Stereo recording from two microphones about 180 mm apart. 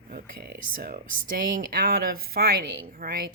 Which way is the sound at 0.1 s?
60° right (ahead or behind).